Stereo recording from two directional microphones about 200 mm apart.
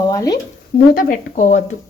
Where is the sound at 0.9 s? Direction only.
45° left (ahead or behind).